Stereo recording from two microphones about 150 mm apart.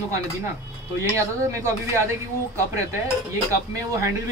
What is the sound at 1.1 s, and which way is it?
Speech, 20° right (ahead or behind).